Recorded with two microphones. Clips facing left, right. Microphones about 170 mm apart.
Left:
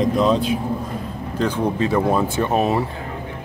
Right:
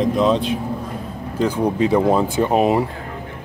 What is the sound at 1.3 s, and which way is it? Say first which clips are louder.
Speech: right 2 dB; 10° right (ahead or behind).